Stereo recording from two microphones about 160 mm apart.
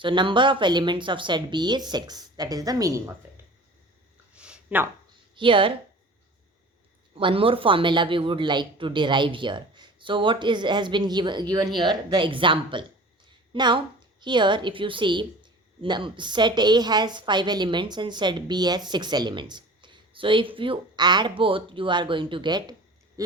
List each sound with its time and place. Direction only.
0.0 s a woman's voice: 30° right (ahead or behind)
3.2 s a sound: 15° right (ahead or behind)
5.3 s a woman's voice: 30° right (ahead or behind)
7.1 s a woman's voice: 35° right (ahead or behind)